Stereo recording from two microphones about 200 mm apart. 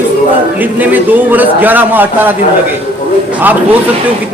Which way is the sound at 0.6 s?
10° right (ahead or behind).